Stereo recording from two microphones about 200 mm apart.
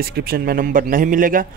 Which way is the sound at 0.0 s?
50° right (ahead or behind).